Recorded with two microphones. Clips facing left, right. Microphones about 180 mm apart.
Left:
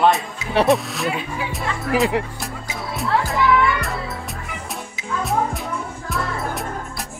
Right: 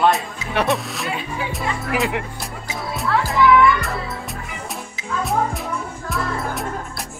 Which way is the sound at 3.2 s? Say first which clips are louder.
Right 5 dB; centre (ahead or behind).